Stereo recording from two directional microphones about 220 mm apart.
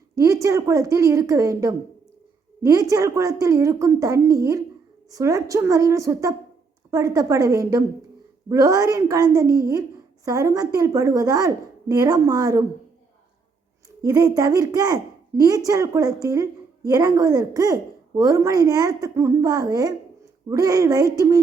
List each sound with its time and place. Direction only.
0.2 s a woman's voice: 15° right (ahead or behind)
2.9 s a woman's voice: 15° right (ahead or behind)
14.0 s a woman's voice: 15° right (ahead or behind)